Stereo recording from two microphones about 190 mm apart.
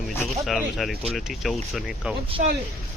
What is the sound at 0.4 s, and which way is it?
Speech, centre (ahead or behind).